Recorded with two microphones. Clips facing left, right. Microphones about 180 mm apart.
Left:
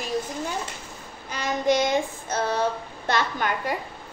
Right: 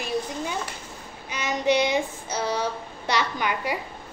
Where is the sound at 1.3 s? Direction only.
45° left (ahead or behind).